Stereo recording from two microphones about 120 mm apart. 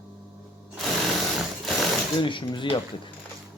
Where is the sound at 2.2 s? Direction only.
40° left (ahead or behind).